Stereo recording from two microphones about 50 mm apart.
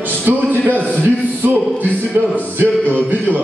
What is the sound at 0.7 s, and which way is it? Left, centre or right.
Speech, left.